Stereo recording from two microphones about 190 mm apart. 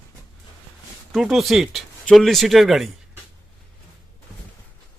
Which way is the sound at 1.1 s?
Centre (ahead or behind).